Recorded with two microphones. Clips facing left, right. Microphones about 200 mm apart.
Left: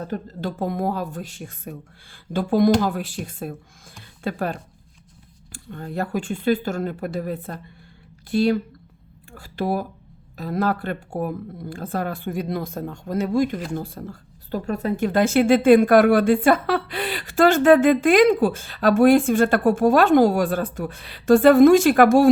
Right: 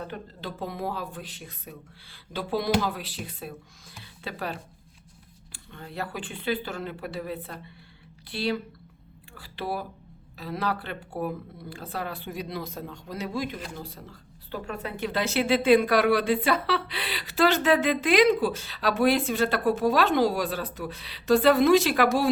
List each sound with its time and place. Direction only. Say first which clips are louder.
0.0 s speech: left 8 dB; 40° left (ahead or behind)